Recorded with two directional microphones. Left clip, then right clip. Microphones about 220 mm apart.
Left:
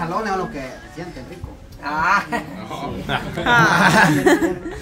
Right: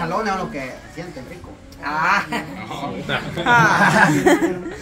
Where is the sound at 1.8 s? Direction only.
15° right (ahead or behind).